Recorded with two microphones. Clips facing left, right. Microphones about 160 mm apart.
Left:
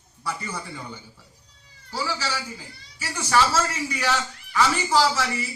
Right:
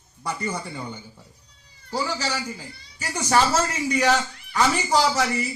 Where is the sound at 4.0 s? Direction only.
45° right (ahead or behind).